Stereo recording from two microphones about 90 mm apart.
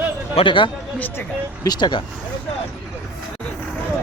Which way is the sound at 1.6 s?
50° left (ahead or behind).